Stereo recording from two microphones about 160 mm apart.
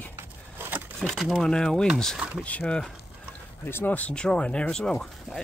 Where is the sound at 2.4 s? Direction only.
10° left (ahead or behind).